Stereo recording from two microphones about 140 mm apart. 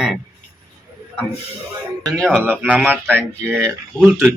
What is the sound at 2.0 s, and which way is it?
Speech, 5° left (ahead or behind).